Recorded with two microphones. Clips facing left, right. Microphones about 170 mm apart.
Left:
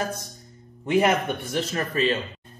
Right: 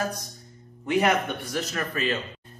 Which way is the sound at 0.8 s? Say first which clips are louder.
Left 2 dB; 25° left (ahead or behind).